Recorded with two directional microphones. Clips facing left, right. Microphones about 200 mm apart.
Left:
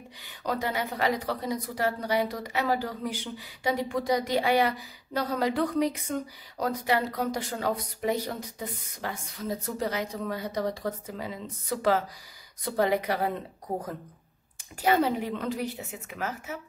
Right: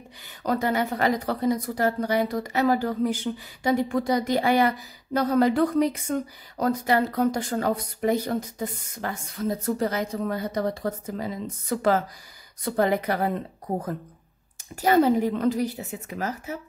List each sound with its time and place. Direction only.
0.5 s a woman's voice: 50° right (ahead or behind)
14.8 s a woman's voice: 45° right (ahead or behind)